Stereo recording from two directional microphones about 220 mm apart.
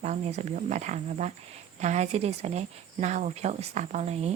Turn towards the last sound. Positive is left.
turn(degrees=-30)  # may be behind; listen again after turning